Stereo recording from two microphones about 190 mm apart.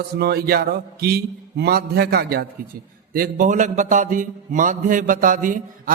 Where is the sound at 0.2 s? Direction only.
55° right (ahead or behind).